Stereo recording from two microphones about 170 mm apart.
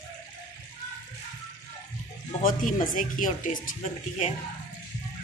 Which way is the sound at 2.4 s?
50° left (ahead or behind).